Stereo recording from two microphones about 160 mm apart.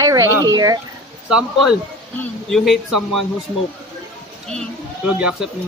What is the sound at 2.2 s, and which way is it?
Speech, centre (ahead or behind).